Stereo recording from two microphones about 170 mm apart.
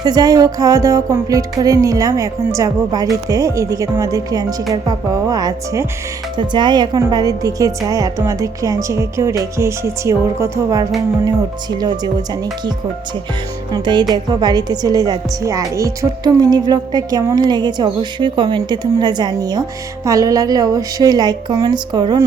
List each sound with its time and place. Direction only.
0.0 s a woman's voice: 25° right (ahead or behind)